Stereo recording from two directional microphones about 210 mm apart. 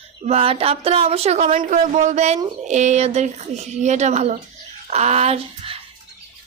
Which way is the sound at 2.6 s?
35° right (ahead or behind).